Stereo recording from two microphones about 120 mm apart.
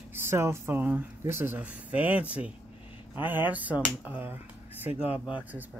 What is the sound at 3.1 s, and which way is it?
Speech, 15° right (ahead or behind).